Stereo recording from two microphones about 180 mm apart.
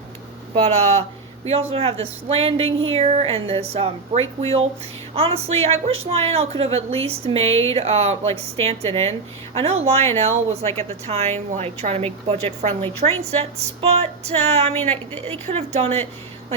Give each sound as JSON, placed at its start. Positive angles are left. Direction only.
{"t": 0.5, "sound": "a woman's voice", "side_deg": -35}
{"t": 2.6, "sound": "a sound", "side_deg": -90}
{"t": 2.9, "sound": "a woman's voice", "side_deg": -35}